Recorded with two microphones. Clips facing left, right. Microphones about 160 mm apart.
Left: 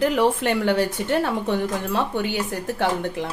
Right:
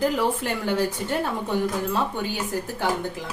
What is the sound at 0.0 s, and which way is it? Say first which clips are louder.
A woman's voice: left 4 dB; 75° left (ahead or behind).